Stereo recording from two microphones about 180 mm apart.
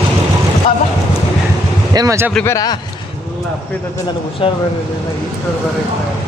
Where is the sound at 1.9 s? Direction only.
20° right (ahead or behind).